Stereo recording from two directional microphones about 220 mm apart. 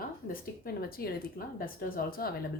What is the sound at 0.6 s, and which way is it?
A woman's voice, 45° left (ahead or behind).